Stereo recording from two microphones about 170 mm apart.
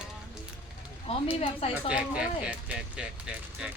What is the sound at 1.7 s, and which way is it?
Speech, 5° right (ahead or behind).